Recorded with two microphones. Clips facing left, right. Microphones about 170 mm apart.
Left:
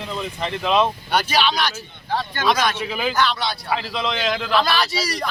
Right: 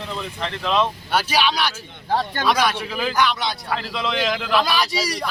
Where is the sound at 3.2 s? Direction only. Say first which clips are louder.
Right 1 dB; 15° right (ahead or behind).